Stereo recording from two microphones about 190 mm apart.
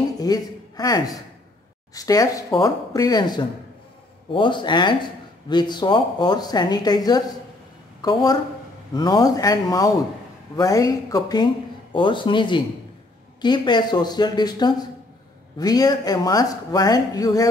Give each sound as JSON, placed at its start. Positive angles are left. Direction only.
{"t": 0.2, "sound": "speech", "side_deg": 20}